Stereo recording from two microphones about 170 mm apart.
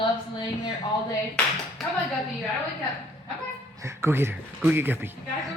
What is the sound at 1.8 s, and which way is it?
Speech, centre (ahead or behind).